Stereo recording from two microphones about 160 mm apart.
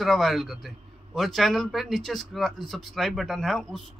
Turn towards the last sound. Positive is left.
turn(degrees=0)  # may be behind; listen again after turning